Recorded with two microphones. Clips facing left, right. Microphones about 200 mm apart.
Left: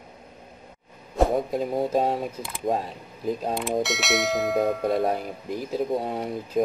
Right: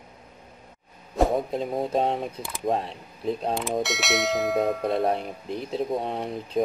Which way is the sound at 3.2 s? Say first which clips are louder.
Even; centre (ahead or behind).